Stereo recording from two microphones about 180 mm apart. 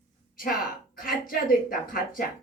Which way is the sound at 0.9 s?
55° left (ahead or behind).